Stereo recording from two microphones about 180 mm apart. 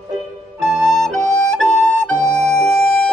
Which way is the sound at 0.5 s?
Centre (ahead or behind).